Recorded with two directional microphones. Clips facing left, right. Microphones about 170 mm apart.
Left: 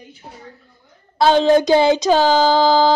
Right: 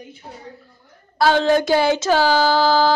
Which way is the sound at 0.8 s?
20° left (ahead or behind).